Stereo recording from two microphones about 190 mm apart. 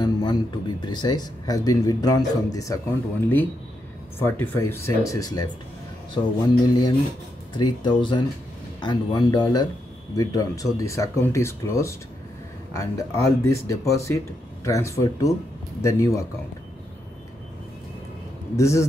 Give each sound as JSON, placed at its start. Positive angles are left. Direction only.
{"t": 0.0, "sound": "speech", "side_deg": 20}
{"t": 4.2, "sound": "speech", "side_deg": 10}
{"t": 18.6, "sound": "speech", "side_deg": 15}